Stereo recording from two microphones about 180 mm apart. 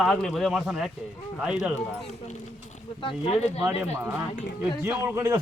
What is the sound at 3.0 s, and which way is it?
Speech, 30° left (ahead or behind).